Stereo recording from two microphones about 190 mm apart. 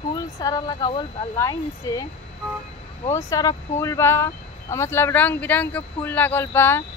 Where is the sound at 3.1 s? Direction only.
15° left (ahead or behind).